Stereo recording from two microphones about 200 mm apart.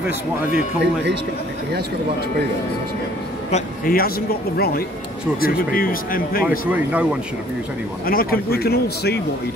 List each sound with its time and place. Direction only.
3.5 s a man's voice: 45° left (ahead or behind)
6.9 s speech: 5° right (ahead or behind)
8.1 s a man's voice: 50° left (ahead or behind)